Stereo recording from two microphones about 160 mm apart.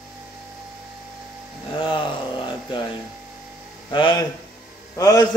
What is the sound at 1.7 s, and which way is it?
Speech, 30° left (ahead or behind).